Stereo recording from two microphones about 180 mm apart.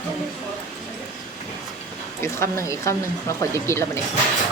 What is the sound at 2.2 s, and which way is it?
Speech, 15° left (ahead or behind).